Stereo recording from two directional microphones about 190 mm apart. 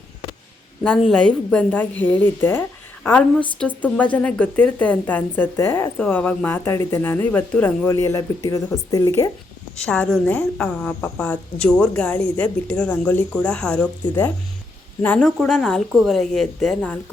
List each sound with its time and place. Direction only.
0.9 s a woman's voice: 5° left (ahead or behind)
9.7 s a woman's voice: 5° left (ahead or behind)
15.0 s a woman's voice: 5° left (ahead or behind)